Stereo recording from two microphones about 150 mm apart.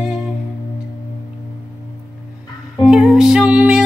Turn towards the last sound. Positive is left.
turn(degrees=-5)  # may be behind; listen again after turning